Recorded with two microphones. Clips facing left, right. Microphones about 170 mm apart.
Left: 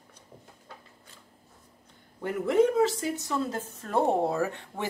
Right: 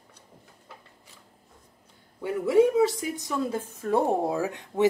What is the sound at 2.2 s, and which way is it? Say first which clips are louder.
A woman's voice: right 3 dB; 10° right (ahead or behind).